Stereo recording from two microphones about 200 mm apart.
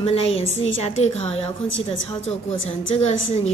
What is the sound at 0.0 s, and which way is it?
A woman's voice, 30° left (ahead or behind).